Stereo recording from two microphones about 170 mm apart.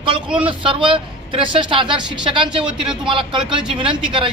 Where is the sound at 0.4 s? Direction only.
30° right (ahead or behind).